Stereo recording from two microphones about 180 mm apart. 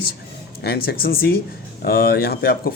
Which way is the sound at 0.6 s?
60° left (ahead or behind).